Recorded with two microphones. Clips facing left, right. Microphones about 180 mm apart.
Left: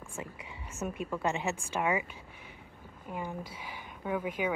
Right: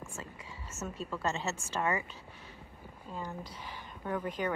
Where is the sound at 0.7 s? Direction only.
15° left (ahead or behind).